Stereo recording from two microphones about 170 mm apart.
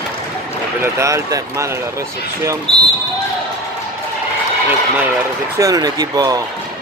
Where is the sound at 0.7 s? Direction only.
15° right (ahead or behind).